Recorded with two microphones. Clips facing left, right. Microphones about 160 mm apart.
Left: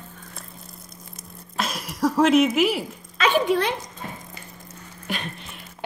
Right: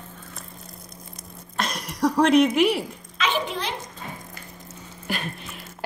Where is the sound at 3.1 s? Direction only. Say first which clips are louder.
Left 6 dB; 50° left (ahead or behind).